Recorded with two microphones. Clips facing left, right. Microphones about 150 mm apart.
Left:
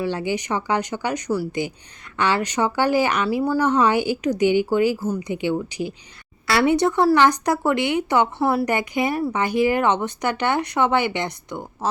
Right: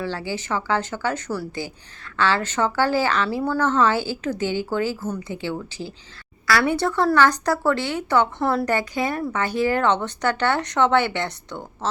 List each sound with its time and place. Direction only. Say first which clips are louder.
0.0 s a woman's voice: left 4 dB; 20° left (ahead or behind)